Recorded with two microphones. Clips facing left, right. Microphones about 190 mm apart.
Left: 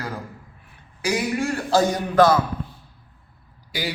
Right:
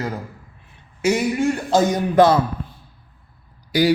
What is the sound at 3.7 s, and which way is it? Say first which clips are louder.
Speech: right 12 dB; 45° right (ahead or behind).